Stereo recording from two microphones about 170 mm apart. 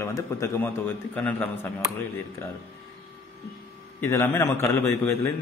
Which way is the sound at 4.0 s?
15° left (ahead or behind).